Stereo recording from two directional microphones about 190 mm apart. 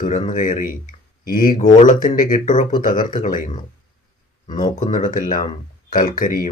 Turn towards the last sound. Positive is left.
turn(degrees=45)  # may be behind; listen again after turning